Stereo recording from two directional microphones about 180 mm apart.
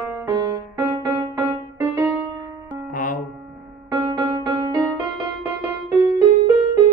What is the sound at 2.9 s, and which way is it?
Music, 50° left (ahead or behind).